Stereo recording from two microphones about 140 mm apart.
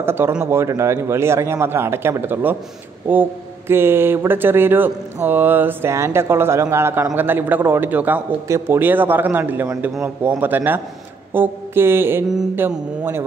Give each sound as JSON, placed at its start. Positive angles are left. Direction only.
{"t": 0.0, "sound": "speech", "side_deg": -15}